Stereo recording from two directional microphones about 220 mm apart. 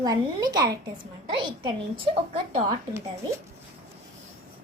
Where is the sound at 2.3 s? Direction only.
25° right (ahead or behind).